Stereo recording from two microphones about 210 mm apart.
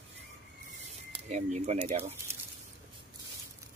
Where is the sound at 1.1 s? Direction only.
35° right (ahead or behind).